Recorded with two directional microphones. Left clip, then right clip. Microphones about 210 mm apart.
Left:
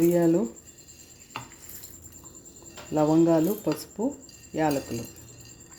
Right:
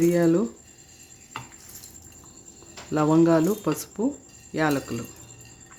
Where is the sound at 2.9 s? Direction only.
20° right (ahead or behind).